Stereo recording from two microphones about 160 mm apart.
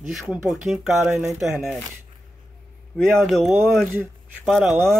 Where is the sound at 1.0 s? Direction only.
15° right (ahead or behind).